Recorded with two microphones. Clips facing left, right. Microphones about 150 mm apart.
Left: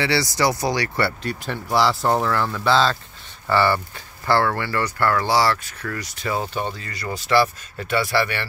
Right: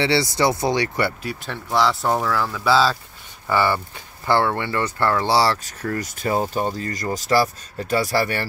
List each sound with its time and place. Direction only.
0.0 s speech: 25° right (ahead or behind)
1.3 s speech: centre (ahead or behind); by 8.5 s 40° right (ahead or behind)